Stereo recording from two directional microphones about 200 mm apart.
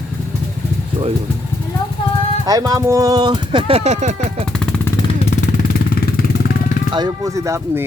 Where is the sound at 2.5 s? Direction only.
20° right (ahead or behind); by 4.4 s 35° right (ahead or behind).